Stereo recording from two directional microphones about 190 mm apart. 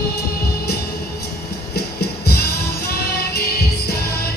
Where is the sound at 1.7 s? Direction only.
55° left (ahead or behind).